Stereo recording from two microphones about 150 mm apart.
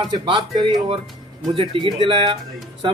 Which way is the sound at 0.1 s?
30° right (ahead or behind).